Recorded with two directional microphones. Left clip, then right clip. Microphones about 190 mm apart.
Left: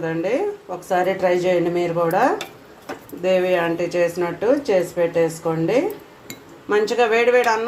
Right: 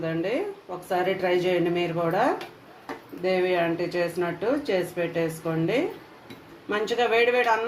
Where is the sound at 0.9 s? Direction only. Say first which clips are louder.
Left 6 dB; 15° left (ahead or behind).